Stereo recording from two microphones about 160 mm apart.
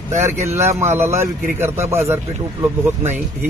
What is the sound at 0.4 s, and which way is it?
Speech, 15° right (ahead or behind).